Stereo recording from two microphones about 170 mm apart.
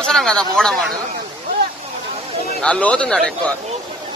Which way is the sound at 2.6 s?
5° left (ahead or behind).